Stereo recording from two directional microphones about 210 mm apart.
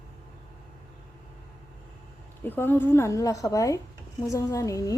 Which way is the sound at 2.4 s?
10° left (ahead or behind).